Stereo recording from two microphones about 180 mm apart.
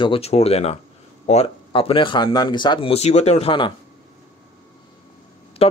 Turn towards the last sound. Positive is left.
turn(degrees=30)  # may be behind; listen again after turning